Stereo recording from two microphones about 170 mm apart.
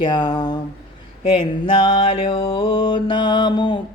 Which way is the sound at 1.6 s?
30° left (ahead or behind).